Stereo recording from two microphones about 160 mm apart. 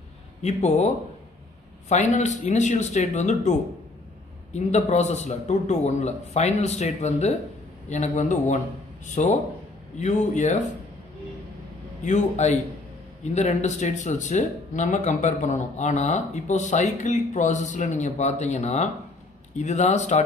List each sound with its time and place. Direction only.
0.4 s speech: 45° left (ahead or behind)
1.9 s speech: 45° left (ahead or behind)
4.6 s speech: 45° left (ahead or behind)
12.0 s speech: 50° left (ahead or behind)